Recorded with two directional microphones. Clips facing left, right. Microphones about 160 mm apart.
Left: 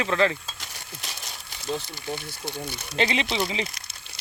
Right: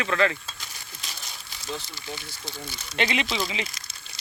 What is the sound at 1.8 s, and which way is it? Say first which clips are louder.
Speech: left 5 dB; 55° left (ahead or behind).